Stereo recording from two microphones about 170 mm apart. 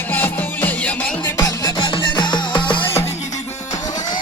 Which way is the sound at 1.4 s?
20° left (ahead or behind).